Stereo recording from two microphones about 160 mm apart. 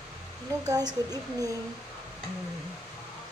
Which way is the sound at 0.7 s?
25° right (ahead or behind).